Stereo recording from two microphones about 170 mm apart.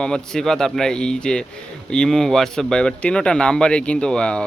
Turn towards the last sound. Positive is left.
turn(degrees=5)  # may be behind; listen again after turning